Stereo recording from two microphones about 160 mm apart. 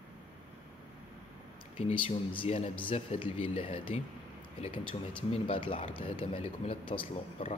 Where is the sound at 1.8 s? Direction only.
35° left (ahead or behind).